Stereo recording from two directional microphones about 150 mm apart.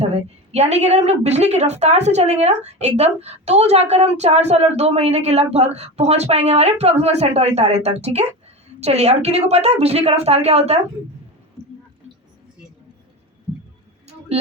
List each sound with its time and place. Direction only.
0.0 s a woman's voice: 45° right (ahead or behind)